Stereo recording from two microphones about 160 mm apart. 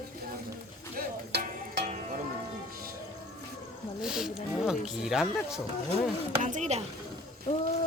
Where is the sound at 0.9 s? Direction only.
60° right (ahead or behind).